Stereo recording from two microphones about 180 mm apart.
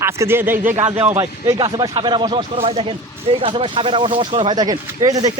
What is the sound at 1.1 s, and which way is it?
Speech, 20° right (ahead or behind).